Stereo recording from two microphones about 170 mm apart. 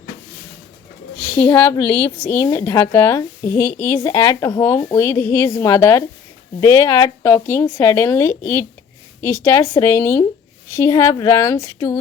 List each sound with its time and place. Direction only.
1.4 s a woman's voice: 10° left (ahead or behind)